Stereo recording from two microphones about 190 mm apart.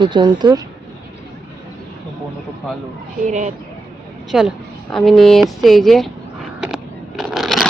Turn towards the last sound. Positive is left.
turn(degrees=0)  # may be behind; listen again after turning